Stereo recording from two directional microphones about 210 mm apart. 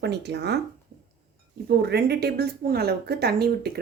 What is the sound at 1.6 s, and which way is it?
Speech, 50° right (ahead or behind).